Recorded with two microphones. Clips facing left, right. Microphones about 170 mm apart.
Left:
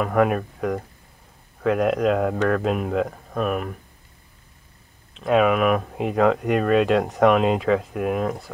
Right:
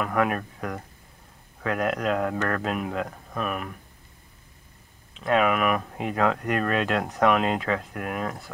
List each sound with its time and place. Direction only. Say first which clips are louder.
0.0 s speech: left 5 dB; centre (ahead or behind)
5.2 s speech: left 4 dB; centre (ahead or behind)